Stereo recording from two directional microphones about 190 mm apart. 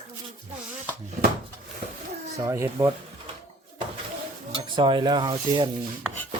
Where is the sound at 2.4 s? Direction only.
15° right (ahead or behind).